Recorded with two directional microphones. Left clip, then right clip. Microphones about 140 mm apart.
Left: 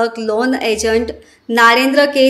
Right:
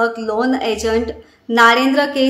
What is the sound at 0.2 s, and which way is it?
A woman's voice, 15° left (ahead or behind).